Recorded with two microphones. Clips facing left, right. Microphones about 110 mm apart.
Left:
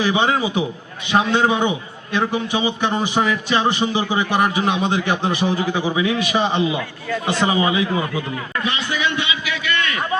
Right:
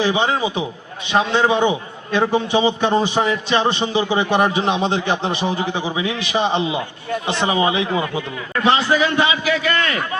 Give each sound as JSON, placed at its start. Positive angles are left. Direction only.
{"t": 0.0, "sound": "a man's voice", "side_deg": -25}